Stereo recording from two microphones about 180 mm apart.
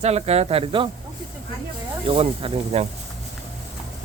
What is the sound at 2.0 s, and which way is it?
Speech, 30° right (ahead or behind).